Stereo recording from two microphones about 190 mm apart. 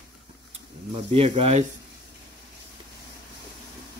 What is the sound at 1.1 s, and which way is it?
Speech, 35° right (ahead or behind).